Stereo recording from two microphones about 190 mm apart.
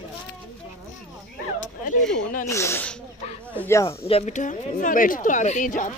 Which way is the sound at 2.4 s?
15° left (ahead or behind).